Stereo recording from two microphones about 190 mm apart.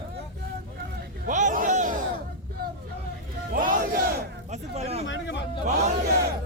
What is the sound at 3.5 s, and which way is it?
Crowd, 45° right (ahead or behind).